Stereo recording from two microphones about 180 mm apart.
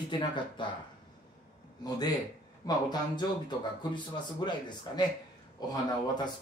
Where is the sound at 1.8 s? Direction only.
20° left (ahead or behind).